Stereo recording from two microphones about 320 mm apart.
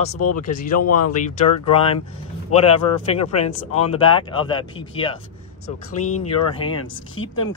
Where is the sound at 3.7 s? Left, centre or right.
Left.